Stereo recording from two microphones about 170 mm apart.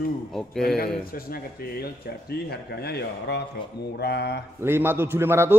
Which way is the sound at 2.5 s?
70° left (ahead or behind).